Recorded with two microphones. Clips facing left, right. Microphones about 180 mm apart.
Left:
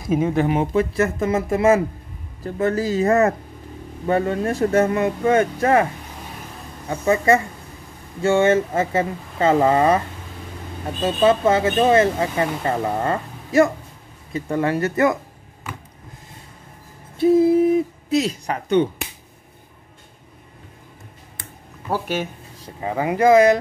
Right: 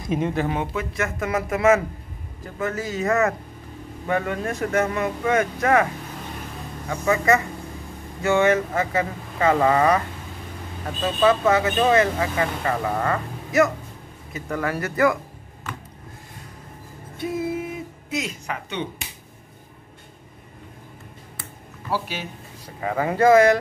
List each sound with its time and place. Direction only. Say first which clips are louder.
0.0 s speech: left 4 dB; 5° left (ahead or behind)
0.3 s speech: left 5 dB; 20° left (ahead or behind)
0.6 s speech: left 7 dB; 35° left (ahead or behind)
6.9 s speech: left 3 dB; 30° left (ahead or behind)
17.2 s a sound: left 12 dB; 30° left (ahead or behind)
18.1 s speech: left 8 dB; 35° left (ahead or behind)
21.9 s speech: left 4 dB; 50° left (ahead or behind)
22.8 s speech: left 1 dB; 20° left (ahead or behind)